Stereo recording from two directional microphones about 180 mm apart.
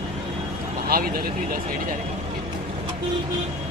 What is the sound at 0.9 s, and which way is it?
Speech, 55° right (ahead or behind).